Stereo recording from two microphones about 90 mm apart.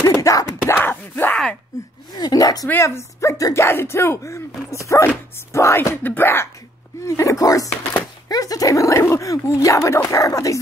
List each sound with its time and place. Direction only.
0.0 s a sound: 40° left (ahead or behind)
0.7 s wail: 25° left (ahead or behind)
1.3 s speech: 10° left (ahead or behind)
2.1 s speech: 45° left (ahead or behind)
2.7 s speech: 30° left (ahead or behind)